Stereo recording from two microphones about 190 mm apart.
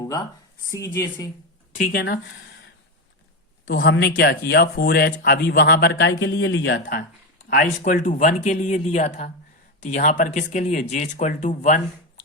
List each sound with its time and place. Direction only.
1.8 s a man's voice: 55° left (ahead or behind)
3.7 s a man's voice: 55° left (ahead or behind)
7.5 s speech: 45° left (ahead or behind)